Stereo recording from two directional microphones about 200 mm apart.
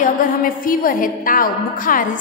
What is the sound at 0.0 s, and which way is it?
A woman's voice, 45° left (ahead or behind).